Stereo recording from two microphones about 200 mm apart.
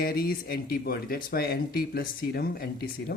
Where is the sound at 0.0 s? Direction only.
50° left (ahead or behind).